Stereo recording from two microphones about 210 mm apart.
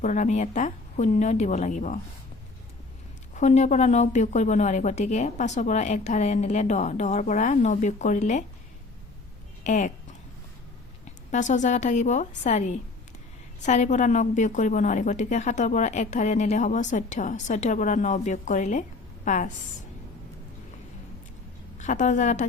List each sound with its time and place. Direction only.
0.0 s a woman's voice: 35° left (ahead or behind)
3.3 s a woman's voice: 35° left (ahead or behind)
9.6 s a sound: 35° left (ahead or behind)
11.3 s a woman's voice: 35° left (ahead or behind)
21.8 s a woman's voice: 35° left (ahead or behind)